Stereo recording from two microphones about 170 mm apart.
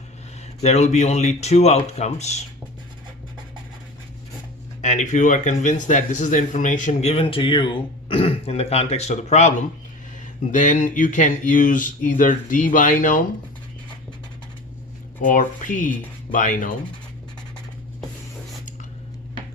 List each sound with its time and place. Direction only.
0.6 s a man's voice: 40° left (ahead or behind)
4.8 s a man's voice: 45° left (ahead or behind)
15.2 s speech: 50° left (ahead or behind)